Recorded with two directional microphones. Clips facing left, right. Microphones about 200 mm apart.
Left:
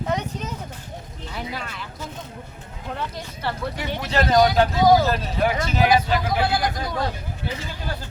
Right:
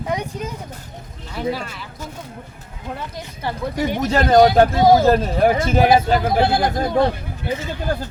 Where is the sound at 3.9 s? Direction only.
45° right (ahead or behind).